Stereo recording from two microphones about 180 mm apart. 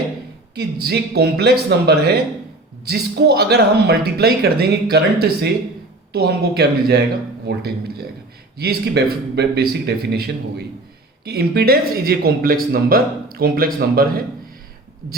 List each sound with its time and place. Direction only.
0.5 s speech: 65° right (ahead or behind)